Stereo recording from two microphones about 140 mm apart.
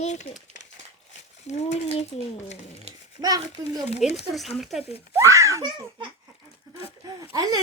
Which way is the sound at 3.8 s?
50° left (ahead or behind).